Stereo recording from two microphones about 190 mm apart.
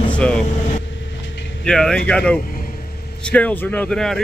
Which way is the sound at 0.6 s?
40° left (ahead or behind).